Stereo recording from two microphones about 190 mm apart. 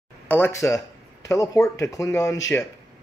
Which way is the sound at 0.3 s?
15° left (ahead or behind).